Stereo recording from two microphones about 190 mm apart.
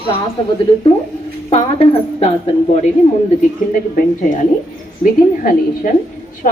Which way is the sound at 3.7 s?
45° left (ahead or behind).